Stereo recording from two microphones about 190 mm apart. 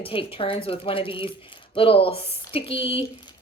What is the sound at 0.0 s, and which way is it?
Speech, 30° left (ahead or behind).